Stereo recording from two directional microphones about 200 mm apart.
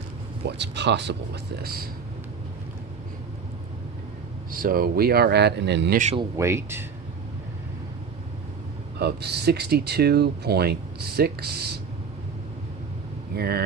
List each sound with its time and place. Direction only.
0.4 s speech: 60° right (ahead or behind)
4.5 s speech: 45° right (ahead or behind)
6.1 s speech: 15° right (ahead or behind)
9.0 s speech: 55° right (ahead or behind)
13.3 s speech: 50° right (ahead or behind)